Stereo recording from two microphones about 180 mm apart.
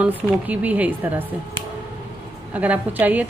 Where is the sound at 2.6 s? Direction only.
10° right (ahead or behind).